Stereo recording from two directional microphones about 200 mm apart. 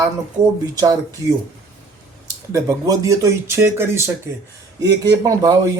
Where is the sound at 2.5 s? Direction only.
15° right (ahead or behind).